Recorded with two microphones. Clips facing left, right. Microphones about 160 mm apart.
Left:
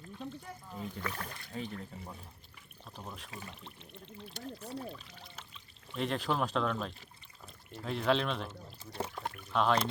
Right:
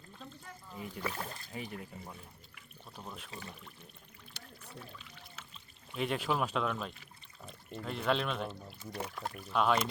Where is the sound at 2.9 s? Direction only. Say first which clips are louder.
Even; centre (ahead or behind).